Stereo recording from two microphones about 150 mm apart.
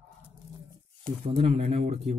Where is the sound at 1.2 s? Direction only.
40° right (ahead or behind).